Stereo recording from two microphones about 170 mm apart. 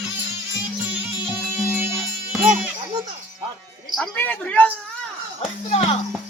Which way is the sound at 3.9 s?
5° left (ahead or behind).